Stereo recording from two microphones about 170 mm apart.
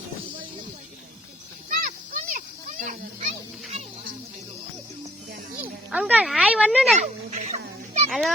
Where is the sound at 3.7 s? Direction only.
45° right (ahead or behind).